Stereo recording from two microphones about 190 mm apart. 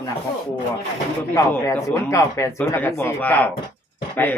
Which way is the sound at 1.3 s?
10° left (ahead or behind).